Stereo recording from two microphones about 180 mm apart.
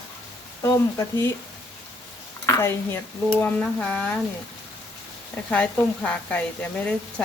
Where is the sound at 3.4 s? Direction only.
10° left (ahead or behind).